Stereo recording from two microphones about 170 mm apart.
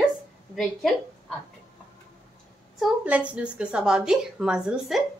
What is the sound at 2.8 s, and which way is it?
A woman's voice, 10° right (ahead or behind).